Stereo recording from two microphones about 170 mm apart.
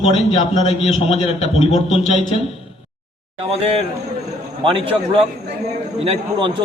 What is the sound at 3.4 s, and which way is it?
A man's voice, 35° right (ahead or behind).